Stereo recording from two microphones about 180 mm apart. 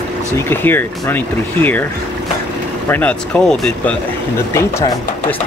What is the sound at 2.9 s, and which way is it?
Speech, 10° left (ahead or behind).